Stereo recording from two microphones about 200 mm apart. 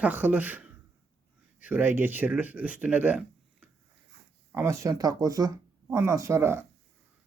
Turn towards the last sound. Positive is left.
turn(degrees=-15)  # may be behind; listen again after turning